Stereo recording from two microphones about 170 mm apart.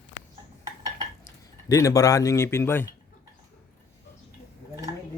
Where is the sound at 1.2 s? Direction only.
15° left (ahead or behind).